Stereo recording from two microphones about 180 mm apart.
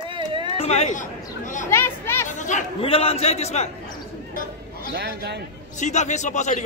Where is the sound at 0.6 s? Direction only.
35° left (ahead or behind).